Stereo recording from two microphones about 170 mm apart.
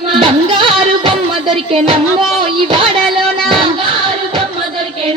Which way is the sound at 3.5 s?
30° right (ahead or behind).